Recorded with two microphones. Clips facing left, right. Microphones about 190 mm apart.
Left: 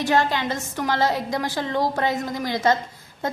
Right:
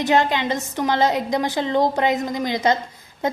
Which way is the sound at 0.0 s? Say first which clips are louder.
Right 2 dB; 20° right (ahead or behind).